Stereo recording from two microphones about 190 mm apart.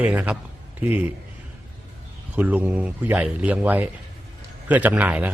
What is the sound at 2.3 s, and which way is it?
A man's voice, 5° right (ahead or behind).